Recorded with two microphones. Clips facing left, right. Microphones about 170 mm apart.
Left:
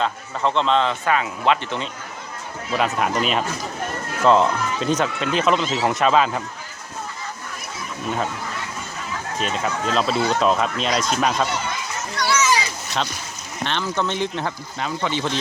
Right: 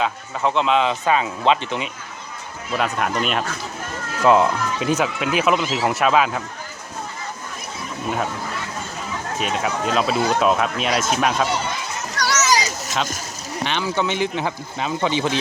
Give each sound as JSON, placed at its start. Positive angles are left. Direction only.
{"t": 0.0, "sound": "speech", "side_deg": -5}
{"t": 2.7, "sound": "speech", "side_deg": 0}
{"t": 9.4, "sound": "speech", "side_deg": -5}
{"t": 12.1, "sound": "children playing", "side_deg": -40}
{"t": 13.7, "sound": "speech", "side_deg": -5}